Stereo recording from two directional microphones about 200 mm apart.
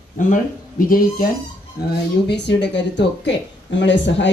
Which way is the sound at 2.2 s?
60° left (ahead or behind).